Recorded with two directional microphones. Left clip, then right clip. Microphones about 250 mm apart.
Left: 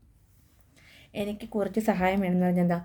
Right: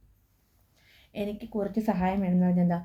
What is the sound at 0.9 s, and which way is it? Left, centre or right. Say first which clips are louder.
A woman's voice: left 1 dB; left.